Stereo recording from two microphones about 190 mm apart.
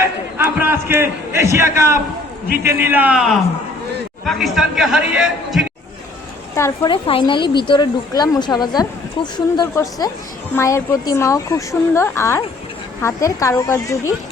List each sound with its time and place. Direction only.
0.0 s a sound: 10° right (ahead or behind)
2.6 s a man's voice: 10° right (ahead or behind)
6.6 s a woman's voice: 15° left (ahead or behind)
6.9 s a woman's voice: 25° left (ahead or behind)